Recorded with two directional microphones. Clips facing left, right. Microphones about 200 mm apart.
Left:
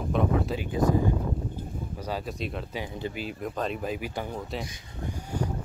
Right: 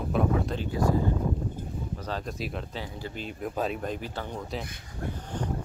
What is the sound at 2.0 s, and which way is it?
Speech, 10° left (ahead or behind).